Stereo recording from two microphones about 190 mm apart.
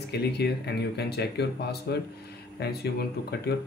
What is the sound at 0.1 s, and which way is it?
Speech, 60° left (ahead or behind).